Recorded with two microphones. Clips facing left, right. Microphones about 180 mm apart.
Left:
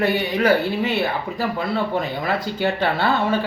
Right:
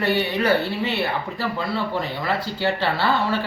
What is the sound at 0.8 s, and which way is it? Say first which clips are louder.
Speech: left 2 dB; 15° left (ahead or behind).